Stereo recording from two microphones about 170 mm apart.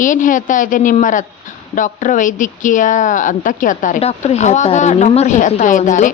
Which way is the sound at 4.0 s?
40° left (ahead or behind).